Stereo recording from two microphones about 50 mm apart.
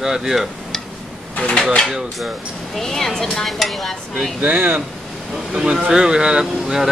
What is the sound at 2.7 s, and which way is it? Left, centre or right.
Speech, centre.